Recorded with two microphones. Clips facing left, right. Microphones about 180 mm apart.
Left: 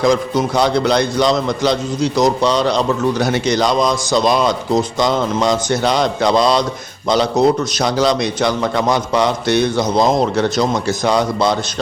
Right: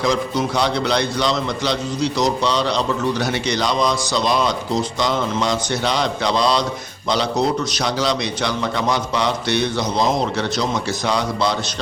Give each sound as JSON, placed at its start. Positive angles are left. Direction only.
{"t": 0.0, "sound": "a man's voice", "side_deg": 45}